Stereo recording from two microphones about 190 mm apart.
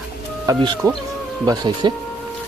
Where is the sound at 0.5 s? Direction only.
20° right (ahead or behind).